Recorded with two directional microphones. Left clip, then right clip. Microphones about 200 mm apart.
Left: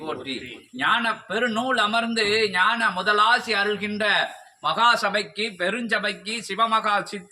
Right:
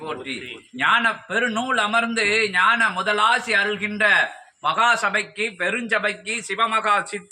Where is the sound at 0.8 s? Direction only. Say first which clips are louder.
Right 3 dB; 15° left (ahead or behind).